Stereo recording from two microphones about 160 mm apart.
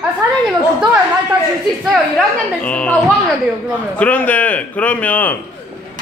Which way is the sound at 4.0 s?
10° left (ahead or behind).